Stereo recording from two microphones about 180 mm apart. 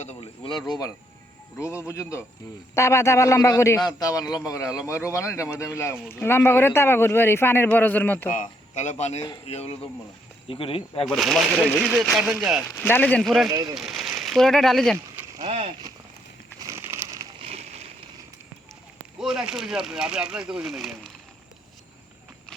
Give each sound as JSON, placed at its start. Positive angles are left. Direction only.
{"t": 0.0, "sound": "speech", "side_deg": 35}
{"t": 0.7, "sound": "a man's voice", "side_deg": 20}
{"t": 8.3, "sound": "speech", "side_deg": 45}
{"t": 11.0, "sound": "speech", "side_deg": 0}
{"t": 12.7, "sound": "speech", "side_deg": 10}
{"t": 13.5, "sound": "speech", "side_deg": -20}
{"t": 13.7, "sound": "a sound", "side_deg": 0}
{"t": 14.2, "sound": "speech", "side_deg": 0}
{"t": 15.4, "sound": "vehicle", "side_deg": -35}
{"t": 16.6, "sound": "a sound", "side_deg": -15}
{"t": 17.4, "sound": "a sound", "side_deg": -35}
{"t": 19.2, "sound": "speech", "side_deg": -5}